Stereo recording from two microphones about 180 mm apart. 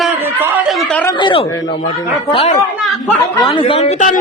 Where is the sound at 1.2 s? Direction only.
30° left (ahead or behind).